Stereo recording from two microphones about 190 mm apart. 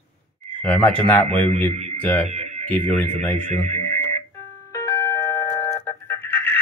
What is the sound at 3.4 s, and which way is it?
Speech, 35° right (ahead or behind).